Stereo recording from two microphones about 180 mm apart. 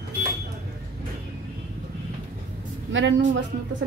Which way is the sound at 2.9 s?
90° right.